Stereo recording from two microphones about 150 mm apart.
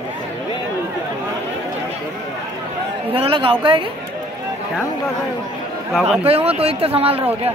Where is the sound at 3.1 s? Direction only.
35° right (ahead or behind).